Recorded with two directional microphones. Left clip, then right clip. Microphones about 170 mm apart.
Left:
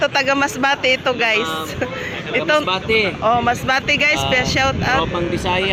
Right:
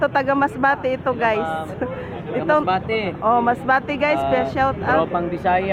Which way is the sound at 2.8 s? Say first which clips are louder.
Left 6 dB; 50° right (ahead or behind).